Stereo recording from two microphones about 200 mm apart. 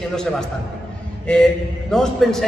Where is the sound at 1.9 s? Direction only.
Centre (ahead or behind).